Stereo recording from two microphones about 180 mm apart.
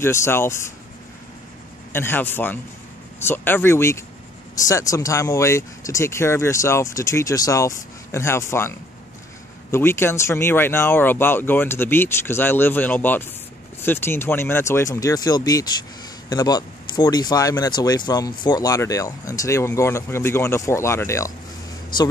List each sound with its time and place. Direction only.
0.0 s speech: 15° left (ahead or behind)
1.9 s speech: 10° left (ahead or behind)